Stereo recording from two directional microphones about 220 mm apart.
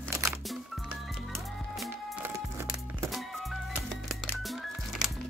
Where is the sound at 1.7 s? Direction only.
Centre (ahead or behind).